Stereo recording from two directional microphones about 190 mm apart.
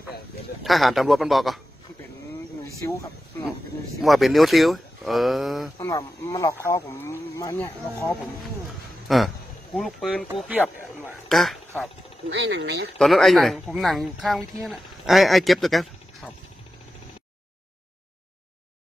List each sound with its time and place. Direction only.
0.7 s speech: centre (ahead or behind)
2.8 s speech: 10° left (ahead or behind)
4.0 s speech: centre (ahead or behind)
5.8 s speech: 15° left (ahead or behind)
9.0 s speech: centre (ahead or behind)
11.2 s speech: centre (ahead or behind)
12.4 s speech: 65° right (ahead or behind)
13.0 s speech: centre (ahead or behind)